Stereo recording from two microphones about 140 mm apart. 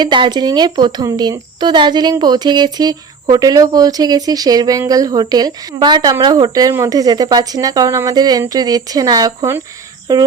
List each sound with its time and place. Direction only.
0.0 s a woman's voice: 35° right (ahead or behind)